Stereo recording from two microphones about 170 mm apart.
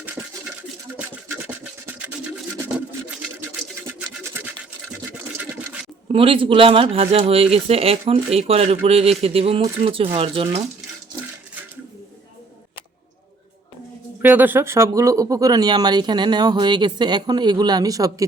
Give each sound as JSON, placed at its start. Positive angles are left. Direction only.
{"t": 0.2, "sound": "a sound", "side_deg": -15}
{"t": 4.4, "sound": "toothbrush", "side_deg": -10}
{"t": 6.1, "sound": "a man's voice", "side_deg": -30}
{"t": 14.2, "sound": "speech", "side_deg": -10}